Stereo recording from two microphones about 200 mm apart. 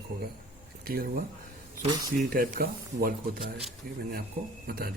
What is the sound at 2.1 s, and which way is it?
Speech, 45° right (ahead or behind).